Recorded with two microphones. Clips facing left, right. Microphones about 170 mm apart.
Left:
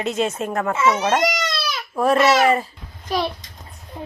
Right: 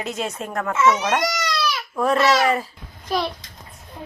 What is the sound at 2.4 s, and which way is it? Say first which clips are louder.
Speech: left 3 dB; centre (ahead or behind).